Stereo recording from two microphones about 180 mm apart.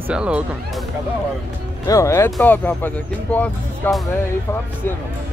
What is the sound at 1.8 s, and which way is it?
Speech, 15° left (ahead or behind).